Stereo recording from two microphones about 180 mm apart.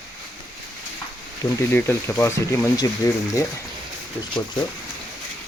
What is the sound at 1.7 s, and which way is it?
Speech, 15° left (ahead or behind).